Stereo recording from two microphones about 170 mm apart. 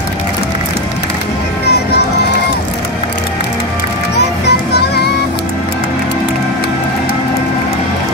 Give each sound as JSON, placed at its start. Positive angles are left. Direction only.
{"t": 4.5, "sound": "music", "side_deg": 75}